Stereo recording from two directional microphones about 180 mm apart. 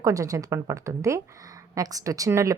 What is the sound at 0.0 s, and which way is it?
A woman's voice, 20° right (ahead or behind).